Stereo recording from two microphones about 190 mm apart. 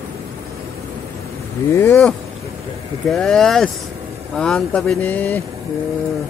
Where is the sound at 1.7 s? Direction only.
15° left (ahead or behind).